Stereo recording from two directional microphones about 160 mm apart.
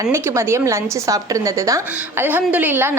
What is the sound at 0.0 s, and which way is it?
A woman's voice, 15° right (ahead or behind).